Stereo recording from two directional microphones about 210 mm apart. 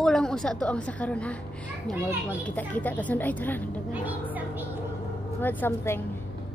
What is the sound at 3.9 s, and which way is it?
Speech, 10° right (ahead or behind).